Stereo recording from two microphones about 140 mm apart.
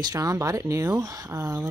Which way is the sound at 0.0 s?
25° right (ahead or behind).